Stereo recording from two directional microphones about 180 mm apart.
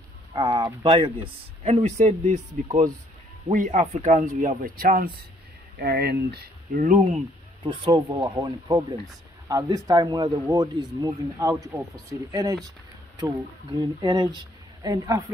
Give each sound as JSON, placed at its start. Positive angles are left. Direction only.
{"t": 0.3, "sound": "speech", "side_deg": -25}
{"t": 5.8, "sound": "speech", "side_deg": -65}
{"t": 7.6, "sound": "speech", "side_deg": -25}
{"t": 11.3, "sound": "speech", "side_deg": -10}